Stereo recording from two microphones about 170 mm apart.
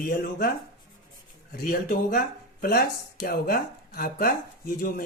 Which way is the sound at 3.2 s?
60° left (ahead or behind).